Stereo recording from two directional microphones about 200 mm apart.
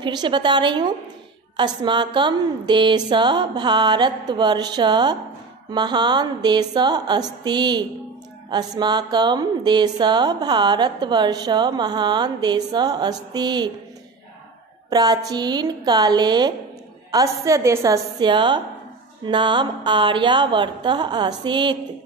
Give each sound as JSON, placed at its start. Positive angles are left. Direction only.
{"t": 0.0, "sound": "speech", "side_deg": -20}
{"t": 14.9, "sound": "a woman's voice", "side_deg": -20}